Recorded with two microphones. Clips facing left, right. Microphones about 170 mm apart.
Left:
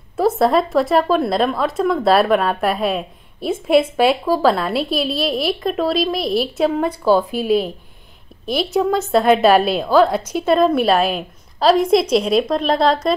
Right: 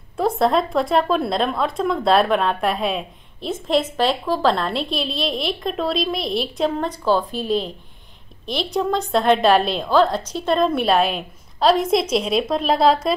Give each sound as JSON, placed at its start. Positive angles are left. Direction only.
{"t": 0.2, "sound": "speech", "side_deg": 5}